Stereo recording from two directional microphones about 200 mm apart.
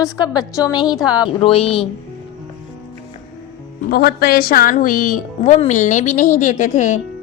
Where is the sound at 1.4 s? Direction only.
30° left (ahead or behind).